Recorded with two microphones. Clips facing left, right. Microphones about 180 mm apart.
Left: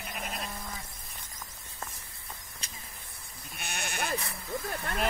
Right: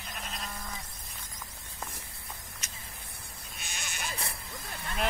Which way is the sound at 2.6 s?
30° left (ahead or behind).